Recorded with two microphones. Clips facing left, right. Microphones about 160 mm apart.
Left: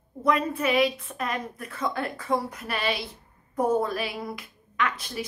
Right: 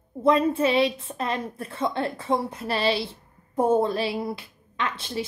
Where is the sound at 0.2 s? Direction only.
30° right (ahead or behind).